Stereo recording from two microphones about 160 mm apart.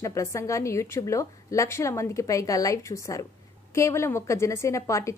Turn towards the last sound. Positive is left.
turn(degrees=20)  # may be behind; listen again after turning